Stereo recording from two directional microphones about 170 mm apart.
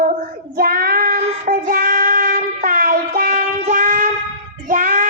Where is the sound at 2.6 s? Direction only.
55° right (ahead or behind).